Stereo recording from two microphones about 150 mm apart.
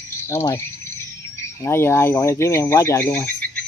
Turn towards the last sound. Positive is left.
turn(degrees=15)  # may be behind; listen again after turning